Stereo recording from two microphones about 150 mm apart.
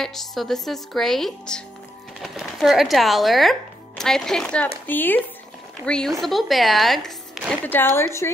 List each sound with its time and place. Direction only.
0.0 s a woman's voice: centre (ahead or behind)
7.7 s a woman's voice: 15° left (ahead or behind)